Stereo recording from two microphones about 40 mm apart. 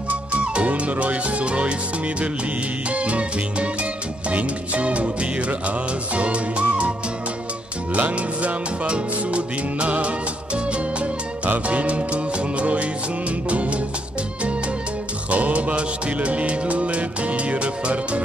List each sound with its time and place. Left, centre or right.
0.1 s music: right
2.9 s music: right
7.9 s music: right
15.2 s music: right